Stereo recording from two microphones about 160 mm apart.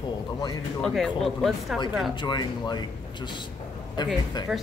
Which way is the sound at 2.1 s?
30° left (ahead or behind).